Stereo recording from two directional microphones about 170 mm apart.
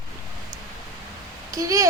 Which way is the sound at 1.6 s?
20° right (ahead or behind).